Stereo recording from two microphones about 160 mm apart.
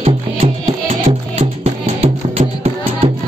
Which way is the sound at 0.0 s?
40° right (ahead or behind).